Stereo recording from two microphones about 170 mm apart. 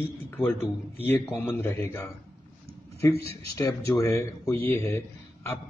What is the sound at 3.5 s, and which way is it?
A man's voice, 20° left (ahead or behind).